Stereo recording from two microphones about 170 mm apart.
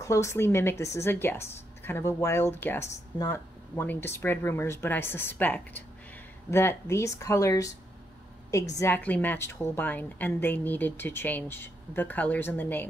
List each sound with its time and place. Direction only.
0.0 s a woman's voice: 15° left (ahead or behind)